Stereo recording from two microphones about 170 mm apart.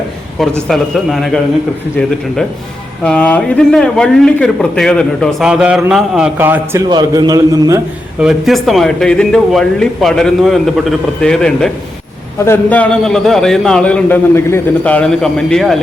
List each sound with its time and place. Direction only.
0.7 s a man's voice: centre (ahead or behind)
3.0 s a man's voice: 10° left (ahead or behind); by 6.8 s 15° right (ahead or behind)
6.8 s a man's voice: 25° right (ahead or behind)
8.2 s a man's voice: centre (ahead or behind)